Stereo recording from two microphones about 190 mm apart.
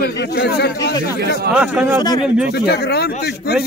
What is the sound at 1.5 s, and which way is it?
Speech, 5° right (ahead or behind).